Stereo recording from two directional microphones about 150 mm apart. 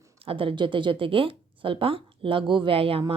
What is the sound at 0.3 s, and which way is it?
A woman's voice, 35° right (ahead or behind).